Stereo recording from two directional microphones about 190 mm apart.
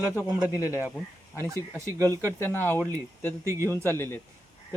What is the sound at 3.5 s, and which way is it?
Speech, 15° right (ahead or behind).